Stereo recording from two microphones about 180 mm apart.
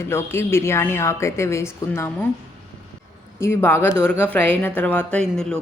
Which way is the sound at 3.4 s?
15° left (ahead or behind).